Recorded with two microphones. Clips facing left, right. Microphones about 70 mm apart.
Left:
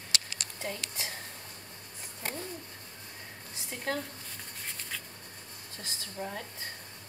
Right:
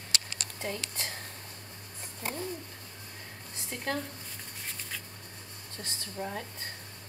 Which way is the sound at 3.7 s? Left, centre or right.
Centre.